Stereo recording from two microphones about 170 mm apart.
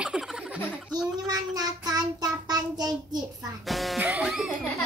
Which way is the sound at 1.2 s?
20° right (ahead or behind).